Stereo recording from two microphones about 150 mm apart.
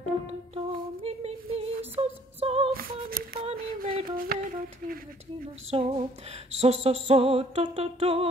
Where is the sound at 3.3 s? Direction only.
75° right (ahead or behind).